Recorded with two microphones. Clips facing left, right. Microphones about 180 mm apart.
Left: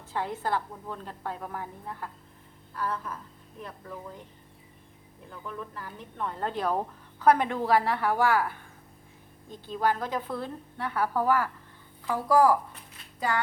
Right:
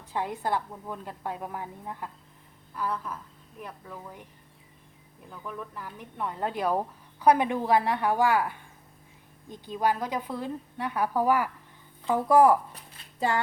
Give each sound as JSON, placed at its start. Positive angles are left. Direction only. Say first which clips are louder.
{"t": 0.0, "sound": "speech", "louder": "right 1 dB", "side_deg": -15}
{"t": 5.5, "sound": "speech", "louder": "right 1 dB", "side_deg": -10}
{"t": 12.7, "sound": "a sound", "louder": "even", "side_deg": -25}